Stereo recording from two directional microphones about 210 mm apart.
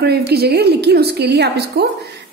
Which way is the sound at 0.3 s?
50° right (ahead or behind).